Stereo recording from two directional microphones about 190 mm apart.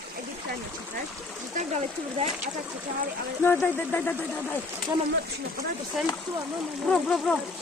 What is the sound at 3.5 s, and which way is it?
Speech, 10° left (ahead or behind).